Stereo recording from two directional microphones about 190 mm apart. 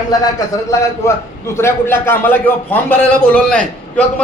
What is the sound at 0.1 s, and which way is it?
A man's voice, 15° left (ahead or behind).